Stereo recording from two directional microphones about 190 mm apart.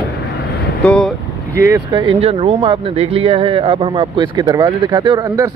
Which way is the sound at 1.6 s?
20° right (ahead or behind).